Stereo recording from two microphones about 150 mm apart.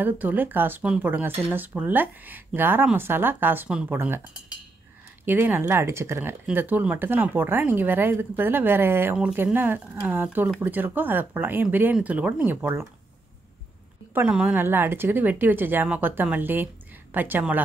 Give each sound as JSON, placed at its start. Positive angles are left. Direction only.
{"t": 0.0, "sound": "speech", "side_deg": -10}
{"t": 5.2, "sound": "speech", "side_deg": -15}
{"t": 14.1, "sound": "speech", "side_deg": -10}